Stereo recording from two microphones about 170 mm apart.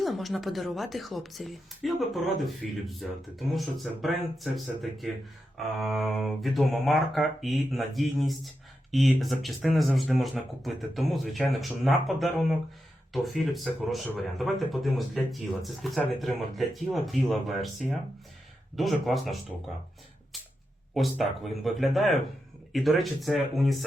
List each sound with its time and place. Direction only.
0.0 s speech: centre (ahead or behind)
20.9 s speech: centre (ahead or behind)